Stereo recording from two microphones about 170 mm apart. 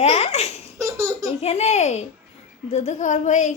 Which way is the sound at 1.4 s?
40° left (ahead or behind).